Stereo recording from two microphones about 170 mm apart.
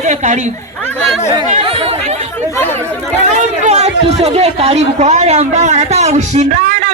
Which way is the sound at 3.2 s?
45° right (ahead or behind).